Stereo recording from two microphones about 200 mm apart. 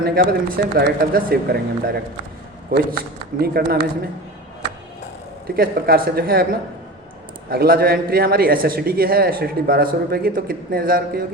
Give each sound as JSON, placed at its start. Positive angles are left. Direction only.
{"t": 0.0, "sound": "a man's voice", "side_deg": -50}
{"t": 3.4, "sound": "a man's voice", "side_deg": -50}
{"t": 5.5, "sound": "a man's voice", "side_deg": -50}